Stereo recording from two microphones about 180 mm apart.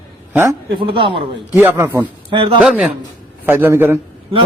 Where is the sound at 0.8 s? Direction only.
30° right (ahead or behind).